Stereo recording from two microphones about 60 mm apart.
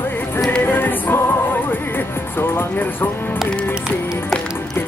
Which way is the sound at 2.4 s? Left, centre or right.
Left.